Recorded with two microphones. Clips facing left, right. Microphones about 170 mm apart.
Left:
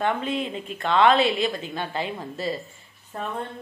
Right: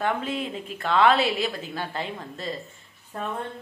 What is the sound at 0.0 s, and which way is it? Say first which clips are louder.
A woman's voice: left 2 dB; 5° right (ahead or behind).